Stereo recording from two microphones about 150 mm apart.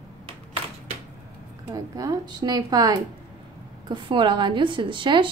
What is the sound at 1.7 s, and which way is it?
A woman's voice, 25° right (ahead or behind).